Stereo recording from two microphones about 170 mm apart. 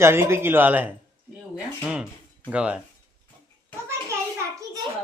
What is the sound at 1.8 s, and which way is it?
Dishes, 5° right (ahead or behind).